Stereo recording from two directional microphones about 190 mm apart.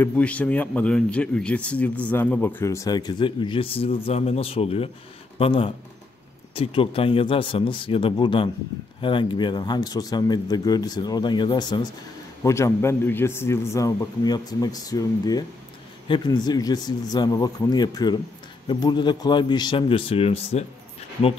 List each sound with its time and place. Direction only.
0.0 s a man's voice: 5° left (ahead or behind); by 20.6 s 30° left (ahead or behind)